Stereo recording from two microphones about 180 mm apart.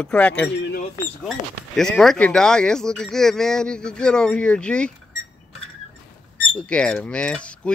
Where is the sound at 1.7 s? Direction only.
Centre (ahead or behind).